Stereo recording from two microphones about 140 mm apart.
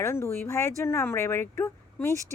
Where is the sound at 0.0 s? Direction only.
15° left (ahead or behind).